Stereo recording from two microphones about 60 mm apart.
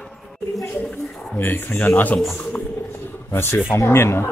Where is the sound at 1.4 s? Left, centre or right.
Left.